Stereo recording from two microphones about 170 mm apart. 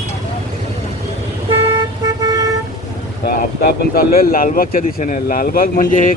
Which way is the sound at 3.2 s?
60° left (ahead or behind).